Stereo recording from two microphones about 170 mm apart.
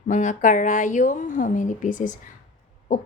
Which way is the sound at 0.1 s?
45° left (ahead or behind).